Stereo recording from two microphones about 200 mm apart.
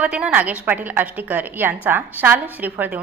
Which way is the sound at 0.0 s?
5° right (ahead or behind).